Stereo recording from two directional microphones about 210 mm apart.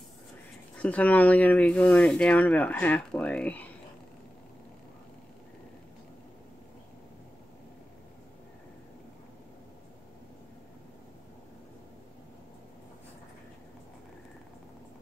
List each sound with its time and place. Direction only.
0.8 s speech: 5° left (ahead or behind)